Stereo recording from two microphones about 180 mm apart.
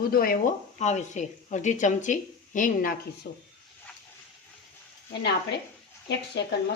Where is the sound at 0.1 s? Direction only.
55° left (ahead or behind).